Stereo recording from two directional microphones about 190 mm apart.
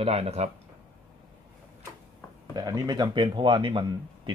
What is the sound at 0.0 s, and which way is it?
Speech, 30° right (ahead or behind).